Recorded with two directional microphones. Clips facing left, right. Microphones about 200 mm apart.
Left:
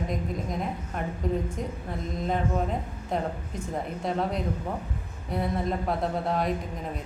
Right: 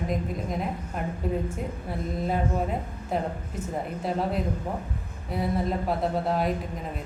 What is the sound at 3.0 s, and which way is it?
A woman's voice, 5° right (ahead or behind).